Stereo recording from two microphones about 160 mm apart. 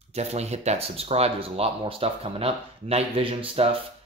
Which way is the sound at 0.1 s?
40° right (ahead or behind).